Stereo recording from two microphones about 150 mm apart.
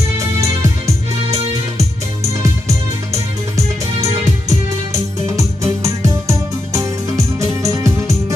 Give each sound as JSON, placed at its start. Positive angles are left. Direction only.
{"t": 5.3, "sound": "music", "side_deg": -20}